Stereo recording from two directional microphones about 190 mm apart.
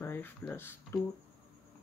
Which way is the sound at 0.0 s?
10° left (ahead or behind).